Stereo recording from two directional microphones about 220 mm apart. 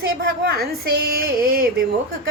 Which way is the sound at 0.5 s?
45° right (ahead or behind).